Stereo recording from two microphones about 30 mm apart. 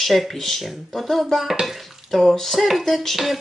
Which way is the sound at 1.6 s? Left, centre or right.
Centre.